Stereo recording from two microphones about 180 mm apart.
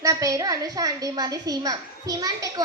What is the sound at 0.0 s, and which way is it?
A woman's voice, 20° right (ahead or behind).